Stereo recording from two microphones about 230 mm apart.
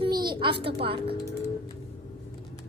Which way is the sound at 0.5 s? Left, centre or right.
Right.